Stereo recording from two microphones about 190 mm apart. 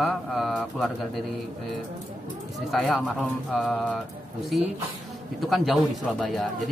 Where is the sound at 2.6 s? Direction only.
Centre (ahead or behind).